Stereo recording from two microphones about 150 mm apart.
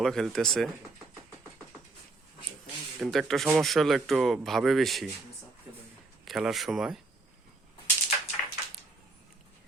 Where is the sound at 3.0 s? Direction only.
Centre (ahead or behind).